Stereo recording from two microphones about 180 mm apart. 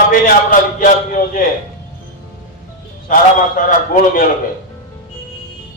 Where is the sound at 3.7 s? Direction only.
50° left (ahead or behind).